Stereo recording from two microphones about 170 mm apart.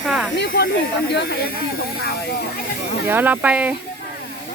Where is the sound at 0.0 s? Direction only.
Centre (ahead or behind).